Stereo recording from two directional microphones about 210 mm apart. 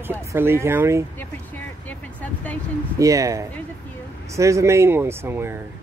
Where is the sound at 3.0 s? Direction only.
15° right (ahead or behind).